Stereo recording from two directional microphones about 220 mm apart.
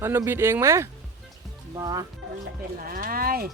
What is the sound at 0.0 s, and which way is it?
Speech, 10° right (ahead or behind).